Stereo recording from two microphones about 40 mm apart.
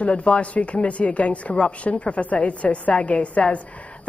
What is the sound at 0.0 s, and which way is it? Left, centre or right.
Speech, left.